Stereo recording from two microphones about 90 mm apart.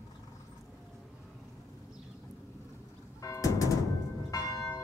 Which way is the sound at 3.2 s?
40° left (ahead or behind).